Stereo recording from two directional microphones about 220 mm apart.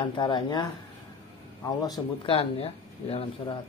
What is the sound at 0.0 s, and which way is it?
Speech, 20° left (ahead or behind).